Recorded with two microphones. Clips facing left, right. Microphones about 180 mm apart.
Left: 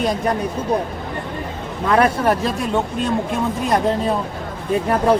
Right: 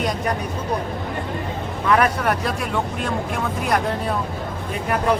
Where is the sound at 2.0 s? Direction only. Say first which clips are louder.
Left 4 dB; 25° left (ahead or behind).